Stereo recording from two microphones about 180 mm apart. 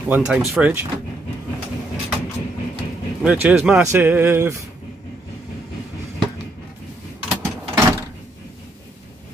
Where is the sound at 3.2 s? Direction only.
5° right (ahead or behind).